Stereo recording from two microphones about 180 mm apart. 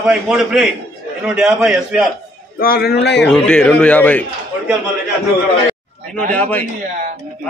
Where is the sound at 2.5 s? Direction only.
55° left (ahead or behind).